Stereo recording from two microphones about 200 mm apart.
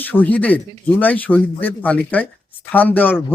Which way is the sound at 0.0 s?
10° left (ahead or behind).